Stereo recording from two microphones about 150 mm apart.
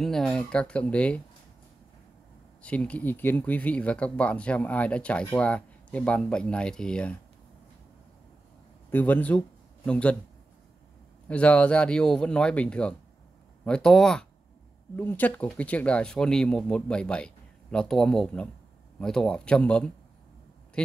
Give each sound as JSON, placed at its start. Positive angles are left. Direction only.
{"t": 0.0, "sound": "speech", "side_deg": 0}
{"t": 2.6, "sound": "speech", "side_deg": 10}
{"t": 8.9, "sound": "speech", "side_deg": 10}
{"t": 11.2, "sound": "a man's voice", "side_deg": 10}